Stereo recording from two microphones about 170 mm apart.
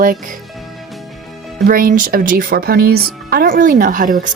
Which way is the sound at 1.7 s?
55° right (ahead or behind).